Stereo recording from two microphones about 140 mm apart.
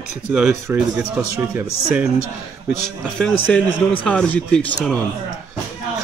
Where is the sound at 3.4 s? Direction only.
10° left (ahead or behind).